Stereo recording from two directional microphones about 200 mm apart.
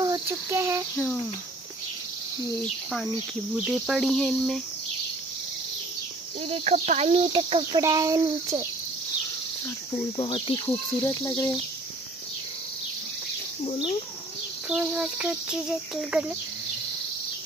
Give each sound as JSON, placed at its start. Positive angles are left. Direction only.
{"t": 0.0, "sound": "a sound", "side_deg": -15}
{"t": 0.9, "sound": "cricket", "side_deg": 10}
{"t": 2.6, "sound": "cricket", "side_deg": 0}
{"t": 6.5, "sound": "speech", "side_deg": -35}
{"t": 10.1, "sound": "speech", "side_deg": 25}
{"t": 11.0, "sound": "cricket", "side_deg": 15}
{"t": 13.7, "sound": "speech", "side_deg": 25}
{"t": 14.7, "sound": "a sound", "side_deg": -5}